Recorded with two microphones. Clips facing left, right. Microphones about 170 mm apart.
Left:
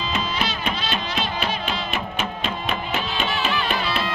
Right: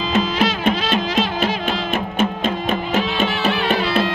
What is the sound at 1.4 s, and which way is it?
Music, 50° right (ahead or behind).